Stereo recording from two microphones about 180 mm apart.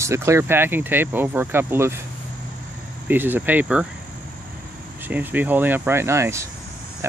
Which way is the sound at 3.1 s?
10° right (ahead or behind).